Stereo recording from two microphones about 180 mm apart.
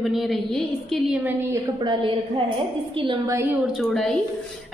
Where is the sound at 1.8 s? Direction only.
25° right (ahead or behind).